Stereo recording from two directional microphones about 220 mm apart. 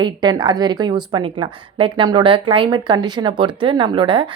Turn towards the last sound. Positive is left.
turn(degrees=-25)  # may be behind; listen again after turning